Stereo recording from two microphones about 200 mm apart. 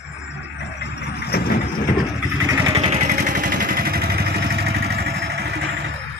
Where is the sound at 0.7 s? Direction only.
55° left (ahead or behind).